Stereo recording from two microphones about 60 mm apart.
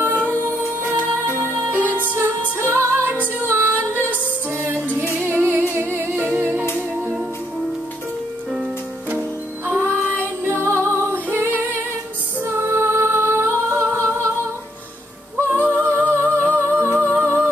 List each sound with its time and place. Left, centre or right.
0.0 s music: right
1.1 s music: right
2.6 s music: right
5.2 s music: right
9.7 s music: right
11.2 s female singing: right
12.4 s singing: right
15.4 s music: right